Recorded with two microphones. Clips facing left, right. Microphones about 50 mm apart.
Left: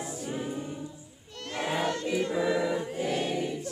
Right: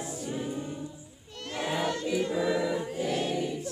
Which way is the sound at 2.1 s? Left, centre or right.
Left.